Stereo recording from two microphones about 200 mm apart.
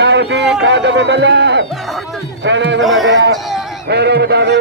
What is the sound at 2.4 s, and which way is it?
Speech, 60° right (ahead or behind).